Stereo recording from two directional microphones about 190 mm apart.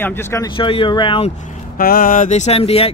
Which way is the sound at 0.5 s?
30° left (ahead or behind).